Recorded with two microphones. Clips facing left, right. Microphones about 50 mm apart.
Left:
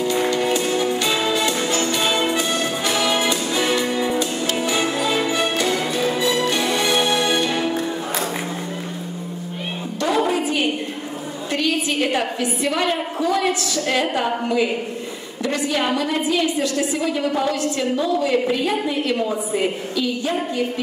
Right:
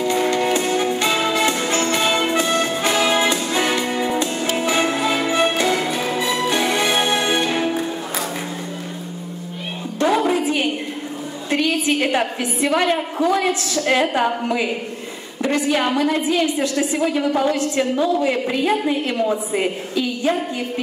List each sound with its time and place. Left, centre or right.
0.3 s music: right
9.9 s music: right
11.5 s a sound: right
13.7 s a woman's voice: right
15.4 s a woman's voice: right